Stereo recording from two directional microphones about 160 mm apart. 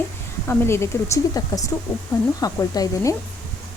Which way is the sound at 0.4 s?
15° left (ahead or behind).